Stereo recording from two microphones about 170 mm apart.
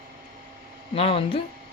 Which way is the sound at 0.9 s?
35° left (ahead or behind).